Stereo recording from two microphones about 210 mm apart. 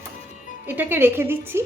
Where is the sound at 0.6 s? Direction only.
10° right (ahead or behind).